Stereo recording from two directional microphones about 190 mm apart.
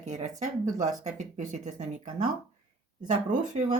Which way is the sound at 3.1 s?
40° right (ahead or behind).